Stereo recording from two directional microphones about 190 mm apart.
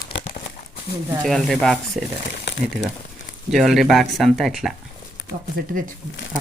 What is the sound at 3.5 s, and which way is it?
Speech, centre (ahead or behind).